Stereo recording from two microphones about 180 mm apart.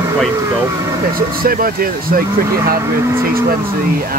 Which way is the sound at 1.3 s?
50° right (ahead or behind).